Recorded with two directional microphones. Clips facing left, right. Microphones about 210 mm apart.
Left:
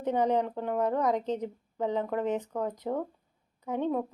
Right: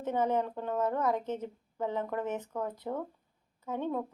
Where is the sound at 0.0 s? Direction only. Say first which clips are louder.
Left 3 dB; 15° left (ahead or behind).